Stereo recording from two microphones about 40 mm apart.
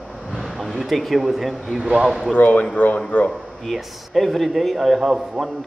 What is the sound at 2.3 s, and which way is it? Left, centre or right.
Speech, left.